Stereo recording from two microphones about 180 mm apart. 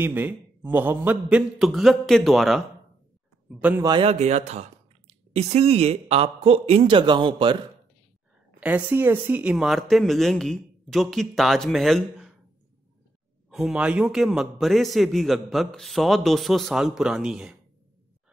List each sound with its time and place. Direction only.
0.0 s a man's voice: 10° right (ahead or behind)
3.8 s speech: 30° right (ahead or behind)
8.5 s a man's voice: 10° right (ahead or behind)
13.5 s a man's voice: centre (ahead or behind)